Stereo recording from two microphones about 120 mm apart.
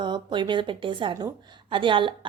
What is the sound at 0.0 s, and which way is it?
A woman's voice, 40° right (ahead or behind).